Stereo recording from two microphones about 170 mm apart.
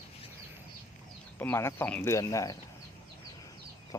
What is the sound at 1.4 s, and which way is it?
Speech, 15° left (ahead or behind).